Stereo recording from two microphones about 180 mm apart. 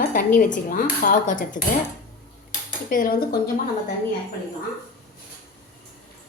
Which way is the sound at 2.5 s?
50° left (ahead or behind).